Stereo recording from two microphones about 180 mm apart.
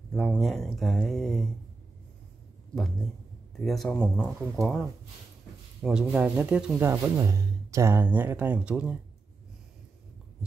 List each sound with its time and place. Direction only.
0.1 s speech: 5° left (ahead or behind)
2.7 s speech: centre (ahead or behind)